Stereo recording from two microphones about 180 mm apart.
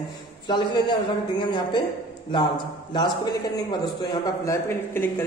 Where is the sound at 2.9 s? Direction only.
20° left (ahead or behind).